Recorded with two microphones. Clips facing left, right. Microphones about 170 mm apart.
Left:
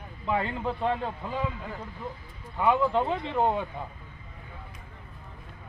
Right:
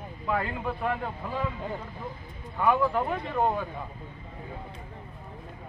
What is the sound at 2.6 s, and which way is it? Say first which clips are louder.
Speech: left 1 dB; 20° left (ahead or behind).